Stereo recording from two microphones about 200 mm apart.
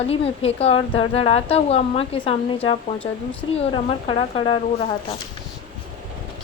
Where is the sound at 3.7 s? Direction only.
25° left (ahead or behind).